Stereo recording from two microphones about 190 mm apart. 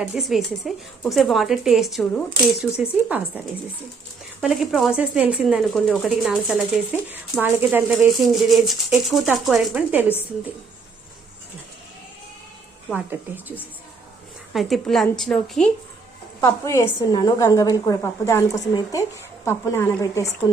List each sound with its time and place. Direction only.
0.0 s speech: centre (ahead or behind)
4.4 s speech: centre (ahead or behind)
12.9 s speech: 10° right (ahead or behind)
14.5 s speech: centre (ahead or behind)
16.4 s a woman's voice: 15° left (ahead or behind)